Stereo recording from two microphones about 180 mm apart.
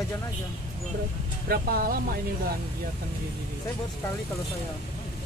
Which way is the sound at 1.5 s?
55° right (ahead or behind).